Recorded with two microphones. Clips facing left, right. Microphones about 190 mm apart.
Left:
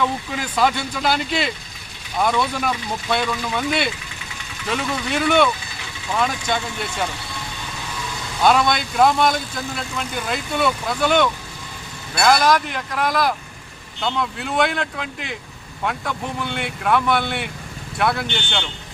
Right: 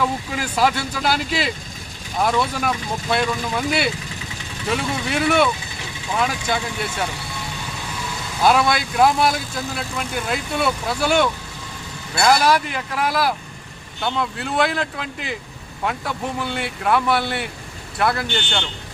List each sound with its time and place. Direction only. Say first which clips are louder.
0.0 s speech: even; 5° right (ahead or behind)
8.4 s speech: even; 5° right (ahead or behind)